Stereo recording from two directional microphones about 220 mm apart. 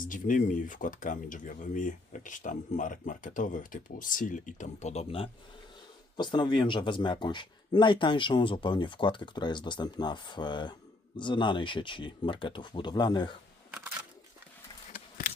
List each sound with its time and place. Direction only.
0.0 s speech: 35° left (ahead or behind); by 13.3 s 20° left (ahead or behind)